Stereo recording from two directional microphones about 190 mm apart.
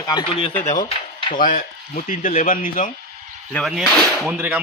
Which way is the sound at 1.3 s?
45° left (ahead or behind).